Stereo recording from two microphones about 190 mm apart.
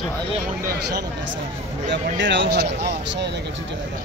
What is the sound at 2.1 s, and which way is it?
Speech, 75° right (ahead or behind).